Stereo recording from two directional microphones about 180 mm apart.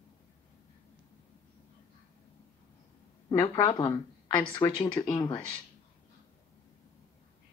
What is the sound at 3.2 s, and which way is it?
Speech, 20° left (ahead or behind).